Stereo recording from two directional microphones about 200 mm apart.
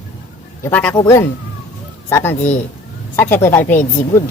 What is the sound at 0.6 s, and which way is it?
Speech, 10° left (ahead or behind).